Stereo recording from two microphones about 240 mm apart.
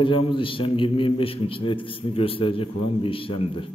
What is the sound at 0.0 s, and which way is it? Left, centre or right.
A man's voice, left.